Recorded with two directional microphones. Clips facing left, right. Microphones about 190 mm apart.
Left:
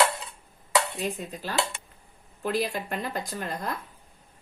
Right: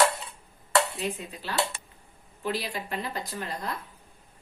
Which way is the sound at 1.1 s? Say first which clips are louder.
Left 1 dB; 45° left (ahead or behind).